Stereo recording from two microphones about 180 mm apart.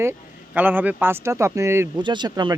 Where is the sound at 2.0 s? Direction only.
25° right (ahead or behind).